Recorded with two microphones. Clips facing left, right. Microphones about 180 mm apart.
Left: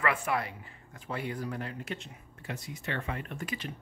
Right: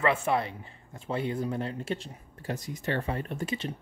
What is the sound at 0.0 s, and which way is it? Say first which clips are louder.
Speech: right 4 dB; 25° right (ahead or behind).